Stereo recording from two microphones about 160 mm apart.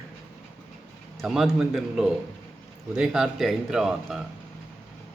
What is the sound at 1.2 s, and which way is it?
A man's voice, centre (ahead or behind).